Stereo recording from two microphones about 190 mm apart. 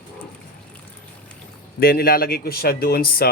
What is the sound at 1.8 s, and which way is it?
Speech, 50° left (ahead or behind).